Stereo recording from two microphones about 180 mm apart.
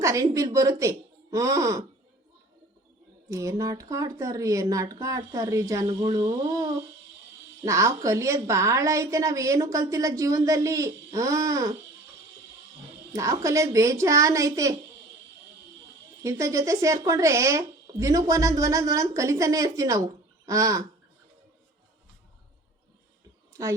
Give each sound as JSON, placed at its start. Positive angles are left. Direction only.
{"t": 0.0, "sound": "speech", "side_deg": -15}
{"t": 3.2, "sound": "a woman's voice", "side_deg": -15}
{"t": 13.1, "sound": "a woman's voice", "side_deg": -15}
{"t": 16.2, "sound": "a woman's voice", "side_deg": -15}